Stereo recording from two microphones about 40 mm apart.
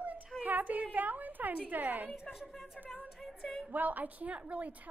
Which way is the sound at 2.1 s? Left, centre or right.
Centre.